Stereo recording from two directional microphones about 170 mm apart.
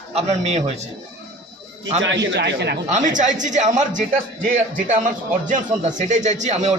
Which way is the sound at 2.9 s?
50° right (ahead or behind).